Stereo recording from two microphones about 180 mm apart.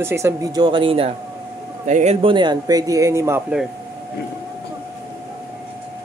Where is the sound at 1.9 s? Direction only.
45° right (ahead or behind).